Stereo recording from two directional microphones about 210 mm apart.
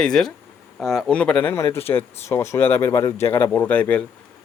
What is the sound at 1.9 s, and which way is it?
Speech, 15° left (ahead or behind).